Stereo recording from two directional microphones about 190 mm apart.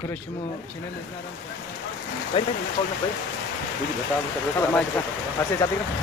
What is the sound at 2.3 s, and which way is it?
Speech, 30° left (ahead or behind).